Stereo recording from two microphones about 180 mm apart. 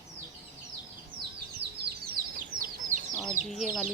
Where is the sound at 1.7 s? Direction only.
60° right (ahead or behind).